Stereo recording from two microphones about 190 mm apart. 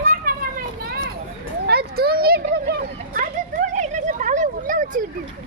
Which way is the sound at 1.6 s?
55° right (ahead or behind).